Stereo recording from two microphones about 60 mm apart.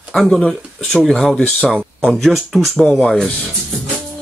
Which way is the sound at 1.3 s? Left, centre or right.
Centre.